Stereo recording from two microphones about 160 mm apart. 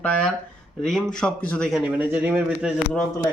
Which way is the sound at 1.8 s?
10° right (ahead or behind).